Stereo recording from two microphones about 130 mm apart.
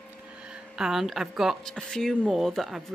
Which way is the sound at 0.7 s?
5° right (ahead or behind).